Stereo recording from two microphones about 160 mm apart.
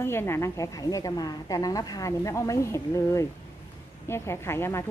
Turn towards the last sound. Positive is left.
turn(degrees=15)  # may be behind; listen again after turning